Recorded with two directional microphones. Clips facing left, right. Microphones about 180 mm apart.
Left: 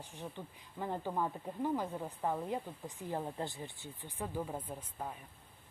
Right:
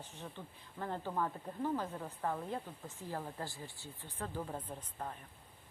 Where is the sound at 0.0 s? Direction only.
15° left (ahead or behind).